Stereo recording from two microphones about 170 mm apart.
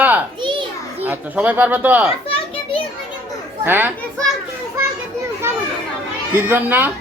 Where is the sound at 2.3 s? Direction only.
35° left (ahead or behind).